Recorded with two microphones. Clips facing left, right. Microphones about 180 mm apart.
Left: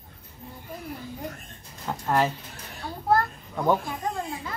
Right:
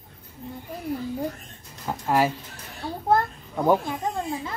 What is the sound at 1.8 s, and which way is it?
Speech, 10° right (ahead or behind).